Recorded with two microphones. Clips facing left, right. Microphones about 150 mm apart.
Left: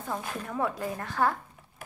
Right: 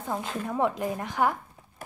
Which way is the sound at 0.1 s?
20° right (ahead or behind).